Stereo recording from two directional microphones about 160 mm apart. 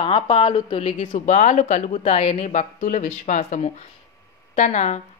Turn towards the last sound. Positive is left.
turn(degrees=45)  # may be behind; listen again after turning